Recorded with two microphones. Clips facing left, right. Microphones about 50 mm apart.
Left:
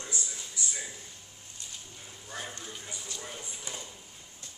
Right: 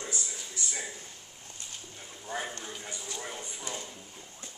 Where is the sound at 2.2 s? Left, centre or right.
Right.